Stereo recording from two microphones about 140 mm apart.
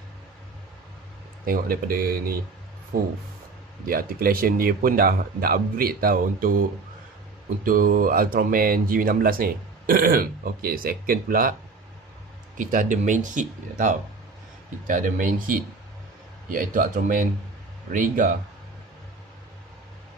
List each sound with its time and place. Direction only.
1.4 s speech: 90° right
7.6 s speech: 85° right
12.5 s speech: 65° right (ahead or behind)